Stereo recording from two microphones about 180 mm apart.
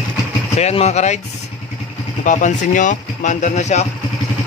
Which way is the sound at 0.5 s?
35° left (ahead or behind).